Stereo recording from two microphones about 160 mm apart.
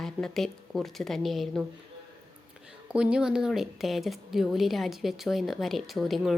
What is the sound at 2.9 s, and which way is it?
A woman's voice, 5° right (ahead or behind).